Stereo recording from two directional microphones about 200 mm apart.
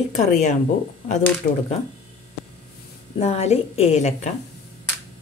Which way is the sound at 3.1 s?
30° left (ahead or behind).